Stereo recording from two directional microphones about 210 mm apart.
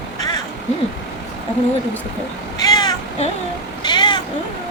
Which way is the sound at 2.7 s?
20° left (ahead or behind).